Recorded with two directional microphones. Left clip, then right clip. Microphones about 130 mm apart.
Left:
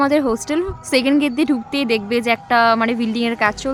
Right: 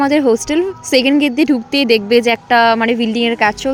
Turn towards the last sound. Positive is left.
turn(degrees=-20)  # may be behind; listen again after turning